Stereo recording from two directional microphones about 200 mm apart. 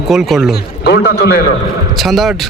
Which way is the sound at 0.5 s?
55° left (ahead or behind).